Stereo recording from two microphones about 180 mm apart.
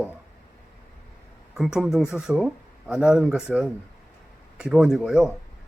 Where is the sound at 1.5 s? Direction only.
5° right (ahead or behind).